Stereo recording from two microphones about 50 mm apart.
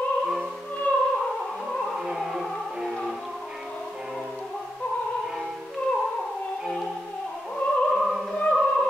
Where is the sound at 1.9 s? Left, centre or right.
Centre.